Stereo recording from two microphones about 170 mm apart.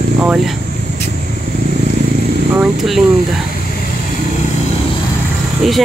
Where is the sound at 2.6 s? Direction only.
Centre (ahead or behind).